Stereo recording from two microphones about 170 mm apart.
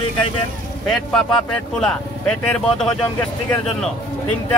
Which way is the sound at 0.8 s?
5° left (ahead or behind).